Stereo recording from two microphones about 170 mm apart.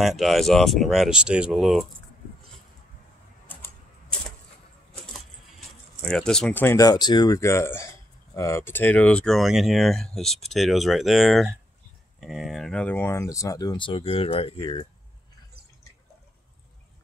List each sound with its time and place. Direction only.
0.0 s speech: centre (ahead or behind)
3.4 s typewriter: 10° left (ahead or behind)
6.0 s speech: 5° left (ahead or behind); by 14.9 s 30° left (ahead or behind)